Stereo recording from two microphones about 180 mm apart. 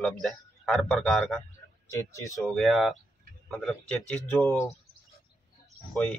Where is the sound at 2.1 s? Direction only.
15° left (ahead or behind).